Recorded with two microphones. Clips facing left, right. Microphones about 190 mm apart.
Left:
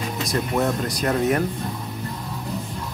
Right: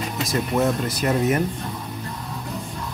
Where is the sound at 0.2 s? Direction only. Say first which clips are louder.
Right 1 dB; centre (ahead or behind).